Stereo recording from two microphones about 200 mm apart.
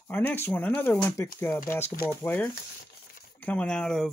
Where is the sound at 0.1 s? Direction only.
10° left (ahead or behind).